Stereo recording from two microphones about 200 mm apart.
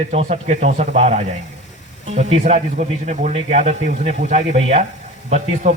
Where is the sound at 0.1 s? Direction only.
35° right (ahead or behind).